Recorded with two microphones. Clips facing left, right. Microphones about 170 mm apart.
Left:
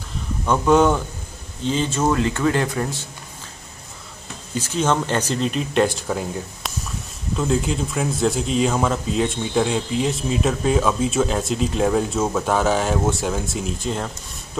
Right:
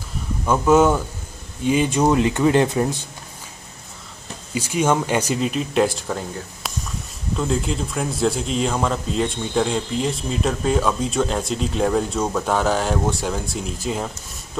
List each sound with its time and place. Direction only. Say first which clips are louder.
0.5 s a man's voice: right 1 dB; 5° right (ahead or behind)
4.6 s a man's voice: right 1 dB; 10° right (ahead or behind)